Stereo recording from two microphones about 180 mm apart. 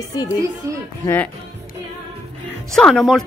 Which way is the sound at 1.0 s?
10° left (ahead or behind).